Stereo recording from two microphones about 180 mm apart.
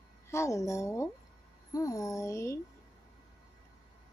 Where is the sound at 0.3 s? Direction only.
15° left (ahead or behind).